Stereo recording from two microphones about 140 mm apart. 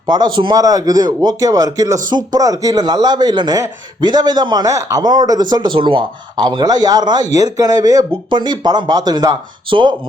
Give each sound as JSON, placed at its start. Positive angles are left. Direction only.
{"t": 0.1, "sound": "a man's voice", "side_deg": -35}